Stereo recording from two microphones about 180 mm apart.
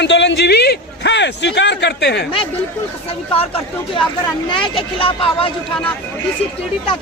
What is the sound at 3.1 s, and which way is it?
Speech, 30° left (ahead or behind).